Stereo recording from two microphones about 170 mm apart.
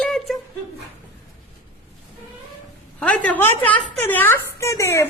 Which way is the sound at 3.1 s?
10° left (ahead or behind).